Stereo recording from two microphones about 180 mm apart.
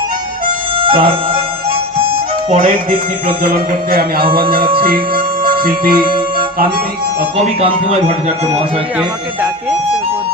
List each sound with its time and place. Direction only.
0.8 s music: 30° right (ahead or behind)
2.6 s speech: 55° right (ahead or behind)
7.3 s speech: 35° right (ahead or behind)
9.0 s speech: 5° right (ahead or behind)